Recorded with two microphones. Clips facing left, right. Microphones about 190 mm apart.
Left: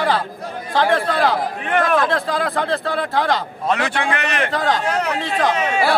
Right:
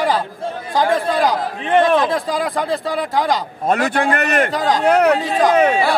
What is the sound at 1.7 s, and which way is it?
Speech, 30° right (ahead or behind).